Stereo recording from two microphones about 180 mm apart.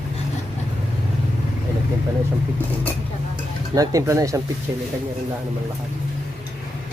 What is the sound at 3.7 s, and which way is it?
Speech, 15° right (ahead or behind).